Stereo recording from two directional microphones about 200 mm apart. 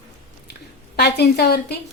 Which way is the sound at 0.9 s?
55° left (ahead or behind).